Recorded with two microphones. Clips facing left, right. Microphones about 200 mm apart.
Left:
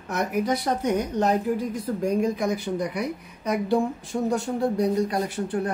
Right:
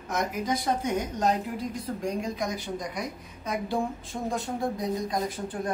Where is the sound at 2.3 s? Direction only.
60° left (ahead or behind).